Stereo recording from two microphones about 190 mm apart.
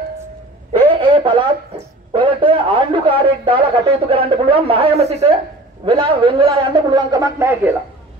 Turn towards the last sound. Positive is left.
turn(degrees=-10)  # may be behind; listen again after turning